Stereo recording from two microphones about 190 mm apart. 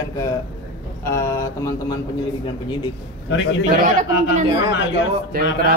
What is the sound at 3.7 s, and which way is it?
Speech, 45° right (ahead or behind).